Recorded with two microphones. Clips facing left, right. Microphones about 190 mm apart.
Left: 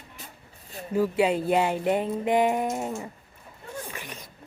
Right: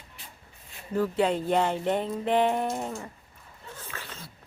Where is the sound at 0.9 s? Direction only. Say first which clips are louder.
Left 2 dB; 10° left (ahead or behind).